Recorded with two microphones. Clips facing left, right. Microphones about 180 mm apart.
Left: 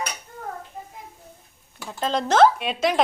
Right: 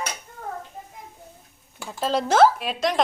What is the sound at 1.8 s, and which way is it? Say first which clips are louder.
Speech: right 1 dB; 5° right (ahead or behind).